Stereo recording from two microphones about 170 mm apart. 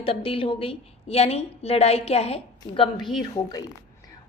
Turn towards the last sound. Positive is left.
turn(degrees=20)  # may be behind; listen again after turning